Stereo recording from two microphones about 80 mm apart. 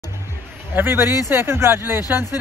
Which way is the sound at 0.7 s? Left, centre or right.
Right.